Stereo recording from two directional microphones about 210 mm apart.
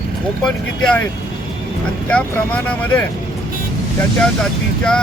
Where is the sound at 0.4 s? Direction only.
5° left (ahead or behind).